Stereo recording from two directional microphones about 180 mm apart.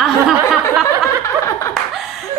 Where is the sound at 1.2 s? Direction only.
15° left (ahead or behind).